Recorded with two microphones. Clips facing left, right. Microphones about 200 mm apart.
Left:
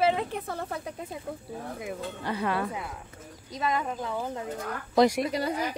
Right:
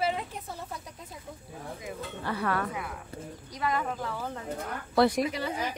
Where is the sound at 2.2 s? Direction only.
20° left (ahead or behind).